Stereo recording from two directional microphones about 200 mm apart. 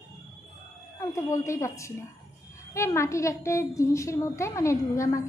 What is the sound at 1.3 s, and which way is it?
A woman's voice, 15° left (ahead or behind).